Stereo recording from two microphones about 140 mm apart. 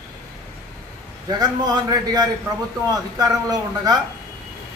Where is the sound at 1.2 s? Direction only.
25° right (ahead or behind).